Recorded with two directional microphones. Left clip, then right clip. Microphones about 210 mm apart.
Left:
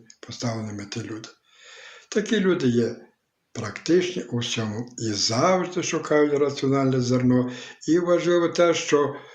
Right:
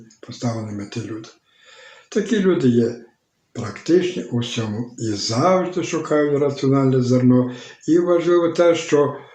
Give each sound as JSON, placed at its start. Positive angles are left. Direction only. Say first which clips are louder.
{"t": 0.2, "sound": "speech", "louder": "right 3 dB", "side_deg": 45}
{"t": 2.0, "sound": "speech", "louder": "right 4 dB", "side_deg": 45}